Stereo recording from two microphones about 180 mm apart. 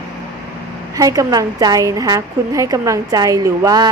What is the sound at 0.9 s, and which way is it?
A woman's voice, 20° right (ahead or behind).